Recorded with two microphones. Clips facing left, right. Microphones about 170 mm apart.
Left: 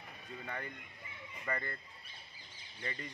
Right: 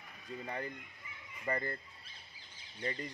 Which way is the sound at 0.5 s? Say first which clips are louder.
Right 3 dB; 30° right (ahead or behind).